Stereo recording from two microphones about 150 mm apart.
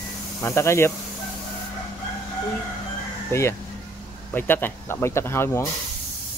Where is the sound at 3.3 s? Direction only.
20° left (ahead or behind).